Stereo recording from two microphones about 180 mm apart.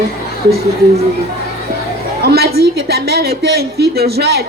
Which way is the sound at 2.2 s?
60° right (ahead or behind).